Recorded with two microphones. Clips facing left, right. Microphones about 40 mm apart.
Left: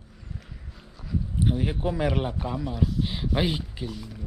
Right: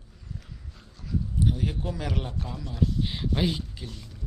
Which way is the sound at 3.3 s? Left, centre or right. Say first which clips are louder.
Left 2 dB; left.